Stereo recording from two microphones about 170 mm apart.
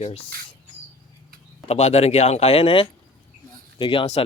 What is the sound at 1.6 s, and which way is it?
Speech, 40° left (ahead or behind).